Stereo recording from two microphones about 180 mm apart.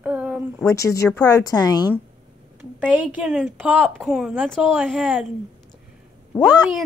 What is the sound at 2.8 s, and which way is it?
A woman's voice, 10° right (ahead or behind).